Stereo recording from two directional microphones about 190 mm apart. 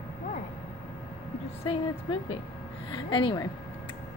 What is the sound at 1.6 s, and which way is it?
Speech, 25° left (ahead or behind).